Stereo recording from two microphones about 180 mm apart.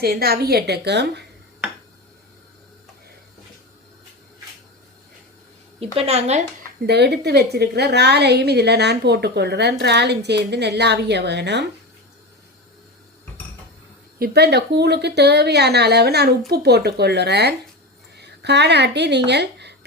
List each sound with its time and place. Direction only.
0.0 s a woman's voice: 60° right (ahead or behind)
5.8 s a woman's voice: 35° right (ahead or behind)
6.8 s a woman's voice: 70° right (ahead or behind)
14.2 s a woman's voice: 65° right (ahead or behind)